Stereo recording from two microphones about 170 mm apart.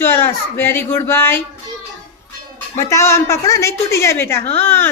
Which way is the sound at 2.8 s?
15° left (ahead or behind).